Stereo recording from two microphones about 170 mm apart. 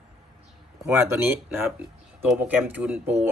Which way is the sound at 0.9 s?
15° right (ahead or behind).